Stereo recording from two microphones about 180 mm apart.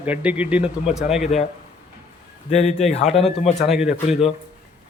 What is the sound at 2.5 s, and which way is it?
Speech, 40° left (ahead or behind).